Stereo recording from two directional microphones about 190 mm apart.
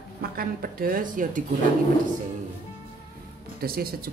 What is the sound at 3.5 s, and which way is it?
Speech, 50° right (ahead or behind).